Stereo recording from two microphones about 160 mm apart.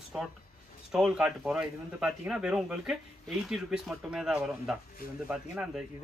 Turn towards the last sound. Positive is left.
turn(degrees=-5)  # may be behind; listen again after turning